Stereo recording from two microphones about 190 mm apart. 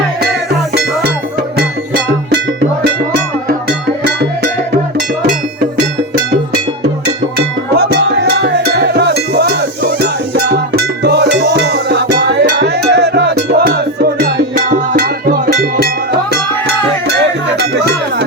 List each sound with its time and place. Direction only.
0.7 s music: 55° right (ahead or behind)
7.8 s music: 60° right (ahead or behind)
17.6 s music: 60° right (ahead or behind)